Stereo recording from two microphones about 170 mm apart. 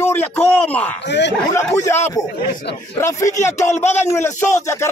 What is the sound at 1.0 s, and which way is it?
Speech, 90° left.